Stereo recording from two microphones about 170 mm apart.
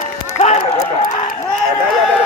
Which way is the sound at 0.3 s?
40° left (ahead or behind).